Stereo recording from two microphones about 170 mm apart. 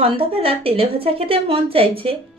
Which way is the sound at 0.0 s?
35° right (ahead or behind).